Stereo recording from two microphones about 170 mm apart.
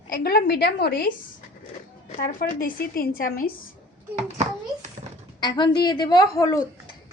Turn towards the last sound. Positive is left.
turn(degrees=20)  # may be behind; listen again after turning